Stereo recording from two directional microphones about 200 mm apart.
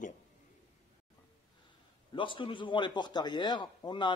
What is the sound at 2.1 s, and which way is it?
Speech, 25° left (ahead or behind).